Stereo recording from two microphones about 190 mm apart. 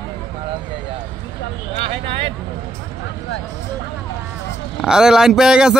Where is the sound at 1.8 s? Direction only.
30° right (ahead or behind).